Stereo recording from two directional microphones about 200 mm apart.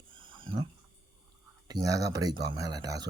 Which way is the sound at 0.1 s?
25° right (ahead or behind).